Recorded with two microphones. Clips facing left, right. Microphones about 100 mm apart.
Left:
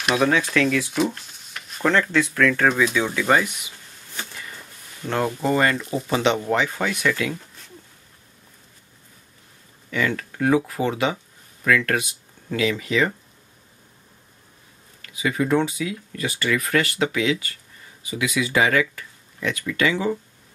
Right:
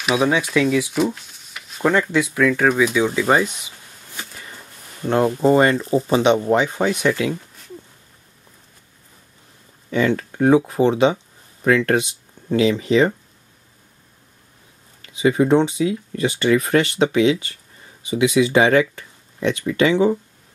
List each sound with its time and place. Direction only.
0.0 s speech: 5° right (ahead or behind)
1.8 s speech: 15° right (ahead or behind)
5.0 s speech: 25° right (ahead or behind)
6.2 s speech: 20° right (ahead or behind)
9.8 s speech: 30° right (ahead or behind)
15.0 s speech: 25° right (ahead or behind)